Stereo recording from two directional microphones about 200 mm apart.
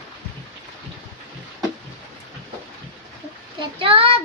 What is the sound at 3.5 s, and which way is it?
Child singing, 25° right (ahead or behind).